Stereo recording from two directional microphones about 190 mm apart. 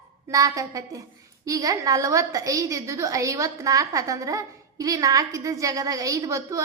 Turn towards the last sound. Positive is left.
turn(degrees=-15)  # may be behind; listen again after turning